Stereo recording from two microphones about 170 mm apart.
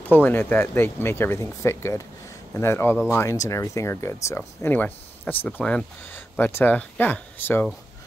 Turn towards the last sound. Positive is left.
turn(degrees=10)  # may be behind; listen again after turning